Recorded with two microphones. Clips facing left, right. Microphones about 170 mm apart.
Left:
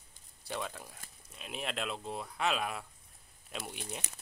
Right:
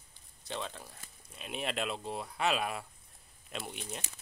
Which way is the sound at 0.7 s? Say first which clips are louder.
Left 1 dB; 10° left (ahead or behind).